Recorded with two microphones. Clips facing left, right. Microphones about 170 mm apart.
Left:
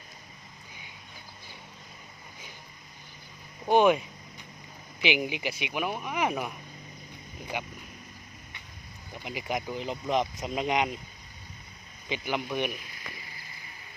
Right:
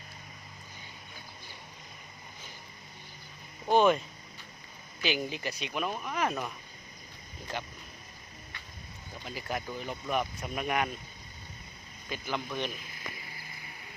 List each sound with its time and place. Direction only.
3.7 s speech: 15° left (ahead or behind)
7.5 s speech: 15° left (ahead or behind)
9.2 s speech: 15° left (ahead or behind)
12.0 s speech: 75° left (ahead or behind)
12.3 s speech: 15° left (ahead or behind)